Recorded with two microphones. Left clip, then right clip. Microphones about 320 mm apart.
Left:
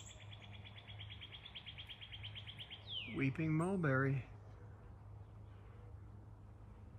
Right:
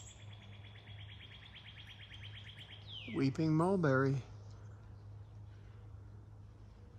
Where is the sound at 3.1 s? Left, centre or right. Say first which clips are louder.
Right 6 dB; centre.